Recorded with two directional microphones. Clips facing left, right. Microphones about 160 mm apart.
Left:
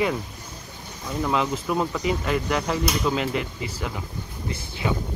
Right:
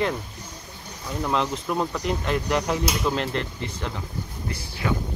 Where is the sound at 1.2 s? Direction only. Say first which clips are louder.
Left 1 dB; centre (ahead or behind).